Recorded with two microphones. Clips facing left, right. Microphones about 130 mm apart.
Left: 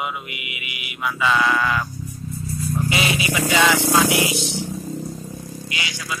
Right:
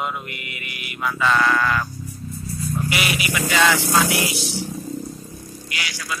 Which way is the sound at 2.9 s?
25° left (ahead or behind).